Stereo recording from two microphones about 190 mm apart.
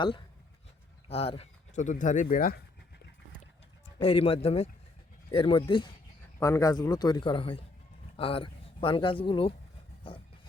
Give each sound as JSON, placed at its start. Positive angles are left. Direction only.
{"t": 1.0, "sound": "speech", "side_deg": 30}
{"t": 4.0, "sound": "speech", "side_deg": 30}